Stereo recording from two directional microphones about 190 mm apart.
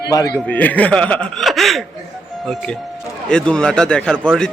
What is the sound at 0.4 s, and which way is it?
Speech, 10° left (ahead or behind).